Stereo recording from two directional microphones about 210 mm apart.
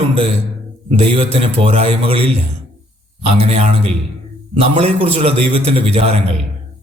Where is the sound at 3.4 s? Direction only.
30° right (ahead or behind).